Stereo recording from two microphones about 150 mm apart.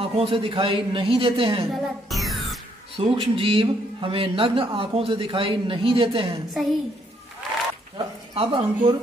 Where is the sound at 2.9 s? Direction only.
40° right (ahead or behind).